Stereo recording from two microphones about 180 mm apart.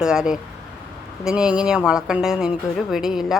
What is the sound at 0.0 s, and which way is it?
Speech, 5° right (ahead or behind).